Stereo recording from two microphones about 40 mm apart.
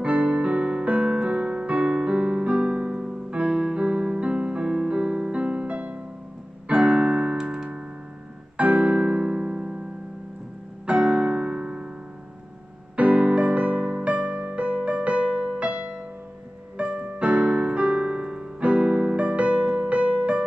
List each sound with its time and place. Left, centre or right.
0.0 s music: right
1.1 s keyboard: right
8.5 s piano: right
10.9 s piano: right
12.9 s music: right
15.3 s music: centre
15.6 s music: right
17.0 s keyboard: right
19.2 s music: right
19.6 s music: right
19.9 s music: right